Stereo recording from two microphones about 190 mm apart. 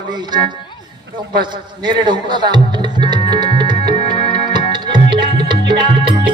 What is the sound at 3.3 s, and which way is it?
Music, 25° right (ahead or behind).